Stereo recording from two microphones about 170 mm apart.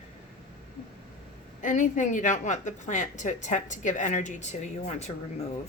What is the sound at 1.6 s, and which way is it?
A woman's voice, 50° left (ahead or behind).